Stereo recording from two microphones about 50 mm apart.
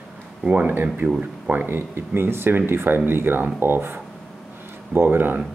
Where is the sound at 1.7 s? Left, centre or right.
Right.